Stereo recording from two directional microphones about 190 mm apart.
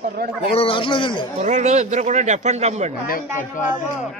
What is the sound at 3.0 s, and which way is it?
Speech, 45° left (ahead or behind).